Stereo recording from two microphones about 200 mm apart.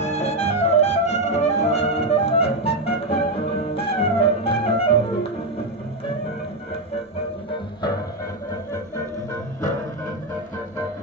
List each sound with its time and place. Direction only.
0.0 s music: 35° left (ahead or behind)